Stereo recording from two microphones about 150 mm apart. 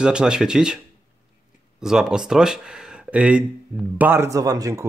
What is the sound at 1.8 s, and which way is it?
Speech, 5° right (ahead or behind).